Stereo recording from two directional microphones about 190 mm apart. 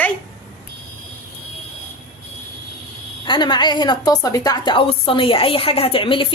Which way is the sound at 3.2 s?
25° left (ahead or behind).